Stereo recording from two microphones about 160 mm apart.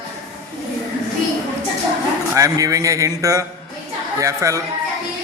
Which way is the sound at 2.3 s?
20° right (ahead or behind).